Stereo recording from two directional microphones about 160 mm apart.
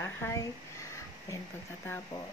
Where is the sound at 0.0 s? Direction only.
15° left (ahead or behind).